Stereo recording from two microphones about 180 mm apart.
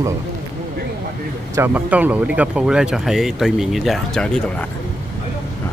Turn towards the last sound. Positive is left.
turn(degrees=5)  # may be behind; listen again after turning